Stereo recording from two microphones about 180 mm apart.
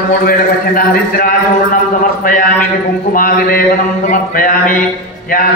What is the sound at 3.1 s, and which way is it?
A man's voice, 50° left (ahead or behind).